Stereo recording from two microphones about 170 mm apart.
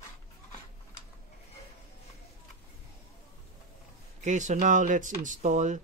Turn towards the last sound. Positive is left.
turn(degrees=-45)  # may be behind; listen again after turning